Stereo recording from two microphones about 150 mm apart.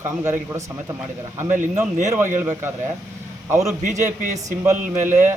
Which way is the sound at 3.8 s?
55° right (ahead or behind).